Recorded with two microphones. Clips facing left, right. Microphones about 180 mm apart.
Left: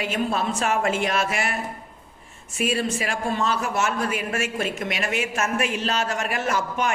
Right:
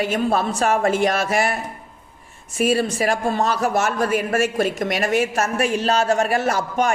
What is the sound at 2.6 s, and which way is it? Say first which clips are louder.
A man's voice: right 5 dB; 40° right (ahead or behind).